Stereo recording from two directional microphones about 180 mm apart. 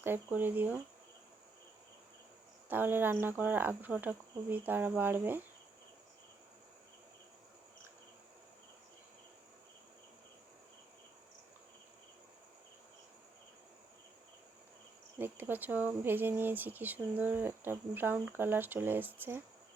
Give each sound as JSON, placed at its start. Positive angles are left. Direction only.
{"t": 0.0, "sound": "speech", "side_deg": -10}
{"t": 2.6, "sound": "speech", "side_deg": -10}
{"t": 15.2, "sound": "speech", "side_deg": -10}